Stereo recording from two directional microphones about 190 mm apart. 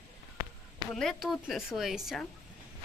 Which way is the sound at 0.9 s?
Centre (ahead or behind).